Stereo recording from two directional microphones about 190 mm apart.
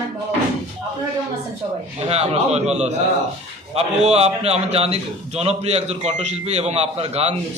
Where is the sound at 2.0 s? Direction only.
35° right (ahead or behind).